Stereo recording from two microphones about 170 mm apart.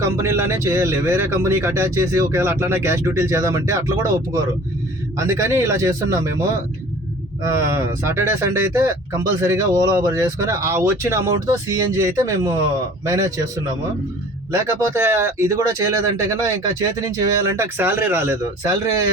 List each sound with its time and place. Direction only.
0.0 s speech: 15° right (ahead or behind)
7.4 s speech: 15° right (ahead or behind)
14.5 s speech: 15° right (ahead or behind)